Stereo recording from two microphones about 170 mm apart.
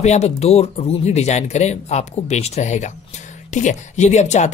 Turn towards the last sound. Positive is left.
turn(degrees=45)  # may be behind; listen again after turning